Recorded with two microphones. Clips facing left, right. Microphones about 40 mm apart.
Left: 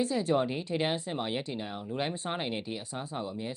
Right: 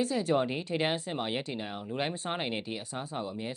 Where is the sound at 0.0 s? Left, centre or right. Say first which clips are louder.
Even; centre.